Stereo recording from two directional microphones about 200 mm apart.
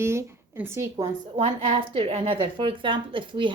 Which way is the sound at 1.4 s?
30° right (ahead or behind).